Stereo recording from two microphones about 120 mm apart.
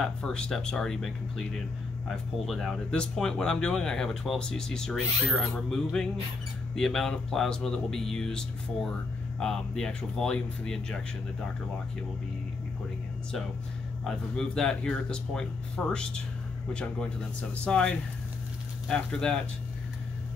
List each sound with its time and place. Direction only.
0.0 s speech: 5° left (ahead or behind)
14.0 s speech: 5° left (ahead or behind)